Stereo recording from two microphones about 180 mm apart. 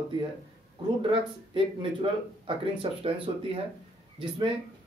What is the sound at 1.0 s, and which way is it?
Speech, 30° right (ahead or behind).